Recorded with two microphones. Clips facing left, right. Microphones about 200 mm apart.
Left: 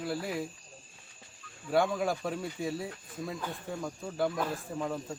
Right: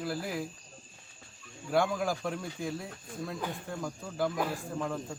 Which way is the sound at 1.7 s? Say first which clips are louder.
Left 1 dB; centre (ahead or behind).